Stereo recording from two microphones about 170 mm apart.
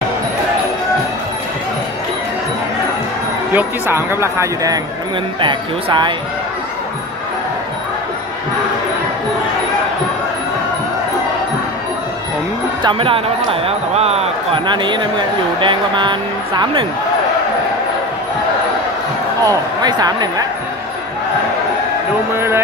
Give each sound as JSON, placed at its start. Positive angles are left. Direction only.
{"t": 3.5, "sound": "speech", "side_deg": -15}
{"t": 5.4, "sound": "speech", "side_deg": -30}
{"t": 12.8, "sound": "speech", "side_deg": -35}
{"t": 19.4, "sound": "speech", "side_deg": -20}
{"t": 22.3, "sound": "speech", "side_deg": -15}